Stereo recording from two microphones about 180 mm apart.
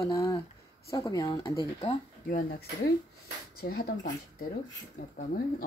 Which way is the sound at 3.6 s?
55° left (ahead or behind).